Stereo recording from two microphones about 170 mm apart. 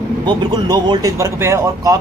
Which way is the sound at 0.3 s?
25° right (ahead or behind).